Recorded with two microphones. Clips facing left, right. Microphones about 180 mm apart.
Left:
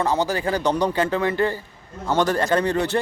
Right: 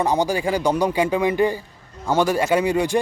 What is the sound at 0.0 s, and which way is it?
A man's voice, 15° right (ahead or behind).